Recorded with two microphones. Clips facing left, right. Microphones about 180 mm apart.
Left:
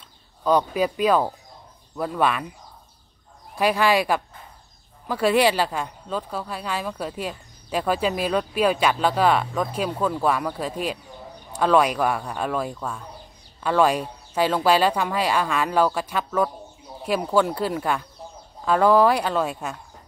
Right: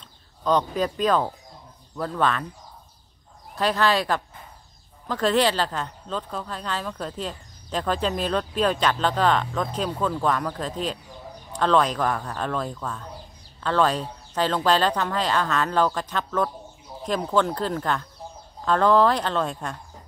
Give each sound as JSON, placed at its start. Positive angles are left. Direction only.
{"t": 0.4, "sound": "speech", "side_deg": 10}
{"t": 3.5, "sound": "speech", "side_deg": 10}